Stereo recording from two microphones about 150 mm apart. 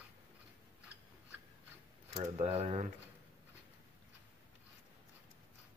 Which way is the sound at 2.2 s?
45° right (ahead or behind).